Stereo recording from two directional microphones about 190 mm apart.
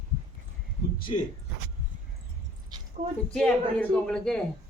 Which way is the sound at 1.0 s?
45° left (ahead or behind).